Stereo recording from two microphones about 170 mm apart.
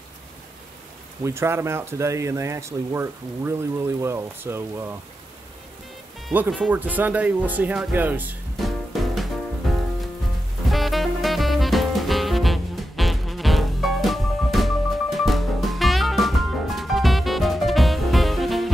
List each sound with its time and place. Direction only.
1.2 s speech: 15° right (ahead or behind)
6.7 s speech: 10° right (ahead or behind)
8.5 s music: centre (ahead or behind)